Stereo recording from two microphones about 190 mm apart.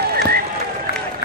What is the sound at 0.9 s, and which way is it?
Applause, 55° left (ahead or behind).